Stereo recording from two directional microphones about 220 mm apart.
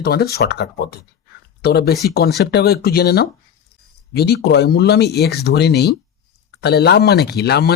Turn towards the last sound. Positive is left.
turn(degrees=45)  # may be behind; listen again after turning